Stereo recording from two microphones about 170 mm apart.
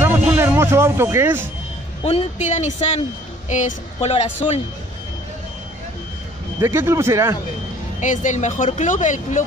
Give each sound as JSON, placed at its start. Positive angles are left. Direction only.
{"t": 0.0, "sound": "music", "side_deg": -15}
{"t": 2.0, "sound": "a woman's voice", "side_deg": 40}
{"t": 6.6, "sound": "speech", "side_deg": -15}
{"t": 8.0, "sound": "speech", "side_deg": 45}